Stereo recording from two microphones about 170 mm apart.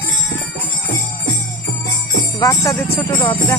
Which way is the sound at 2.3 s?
20° left (ahead or behind).